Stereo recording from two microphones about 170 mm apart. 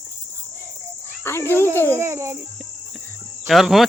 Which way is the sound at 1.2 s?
15° left (ahead or behind).